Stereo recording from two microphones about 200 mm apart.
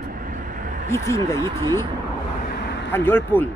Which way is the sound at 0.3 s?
40° right (ahead or behind).